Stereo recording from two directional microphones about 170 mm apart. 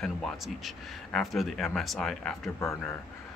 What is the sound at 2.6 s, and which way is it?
Speech, 15° left (ahead or behind).